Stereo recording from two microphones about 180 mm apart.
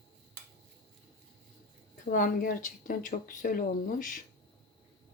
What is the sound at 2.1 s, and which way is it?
Speech, 50° left (ahead or behind).